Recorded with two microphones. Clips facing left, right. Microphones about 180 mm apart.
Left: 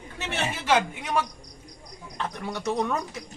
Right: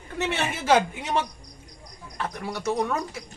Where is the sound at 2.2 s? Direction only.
5° right (ahead or behind).